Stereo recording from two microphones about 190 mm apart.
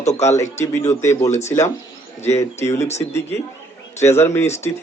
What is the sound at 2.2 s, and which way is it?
Speech, 15° left (ahead or behind).